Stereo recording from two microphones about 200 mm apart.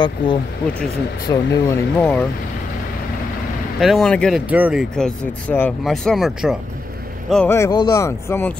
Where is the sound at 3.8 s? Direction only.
Centre (ahead or behind).